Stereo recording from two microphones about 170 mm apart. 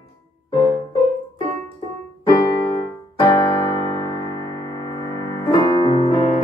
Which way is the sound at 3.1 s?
30° left (ahead or behind).